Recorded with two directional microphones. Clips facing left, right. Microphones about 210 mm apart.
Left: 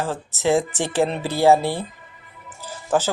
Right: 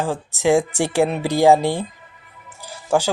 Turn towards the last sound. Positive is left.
turn(degrees=-10)  # may be behind; listen again after turning